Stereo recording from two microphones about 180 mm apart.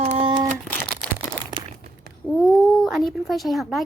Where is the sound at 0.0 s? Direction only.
30° right (ahead or behind).